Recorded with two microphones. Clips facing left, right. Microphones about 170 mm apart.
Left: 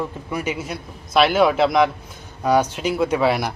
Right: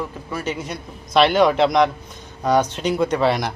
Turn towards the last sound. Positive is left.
turn(degrees=5)  # may be behind; listen again after turning